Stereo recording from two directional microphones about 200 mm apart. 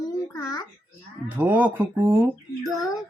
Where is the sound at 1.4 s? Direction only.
10° right (ahead or behind).